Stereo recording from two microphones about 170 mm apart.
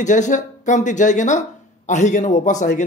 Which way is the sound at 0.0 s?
45° left (ahead or behind).